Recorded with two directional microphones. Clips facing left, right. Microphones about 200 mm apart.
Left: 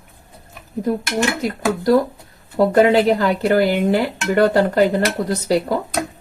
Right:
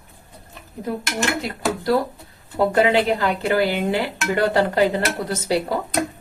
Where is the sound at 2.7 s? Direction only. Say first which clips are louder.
Left 5 dB; 40° left (ahead or behind).